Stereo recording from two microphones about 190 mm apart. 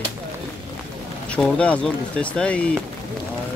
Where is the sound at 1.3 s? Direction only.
5° left (ahead or behind).